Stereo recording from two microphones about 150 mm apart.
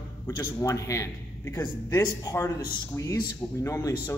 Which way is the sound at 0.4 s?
20° left (ahead or behind).